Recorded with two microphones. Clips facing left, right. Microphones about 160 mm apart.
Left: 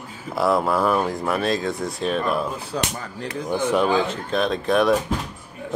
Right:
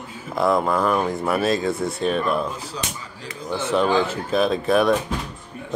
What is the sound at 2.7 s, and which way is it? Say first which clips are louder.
Speech: left 5 dB; 60° left (ahead or behind).